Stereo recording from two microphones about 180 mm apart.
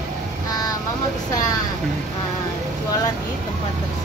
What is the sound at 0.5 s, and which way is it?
Vehicle, 20° left (ahead or behind).